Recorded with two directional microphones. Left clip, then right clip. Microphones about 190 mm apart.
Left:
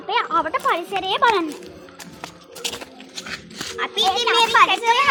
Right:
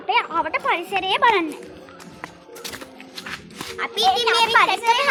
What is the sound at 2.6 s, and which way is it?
Music, 30° left (ahead or behind).